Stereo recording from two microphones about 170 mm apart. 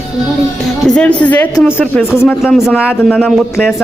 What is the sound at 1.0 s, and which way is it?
A woman's voice, 10° left (ahead or behind).